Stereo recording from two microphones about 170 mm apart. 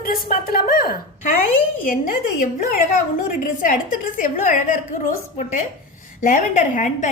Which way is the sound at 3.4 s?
50° left (ahead or behind).